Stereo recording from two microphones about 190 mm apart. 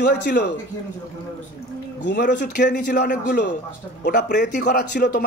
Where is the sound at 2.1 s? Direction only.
60° left (ahead or behind).